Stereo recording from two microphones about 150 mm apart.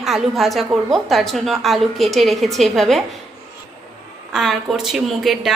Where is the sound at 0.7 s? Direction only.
20° right (ahead or behind).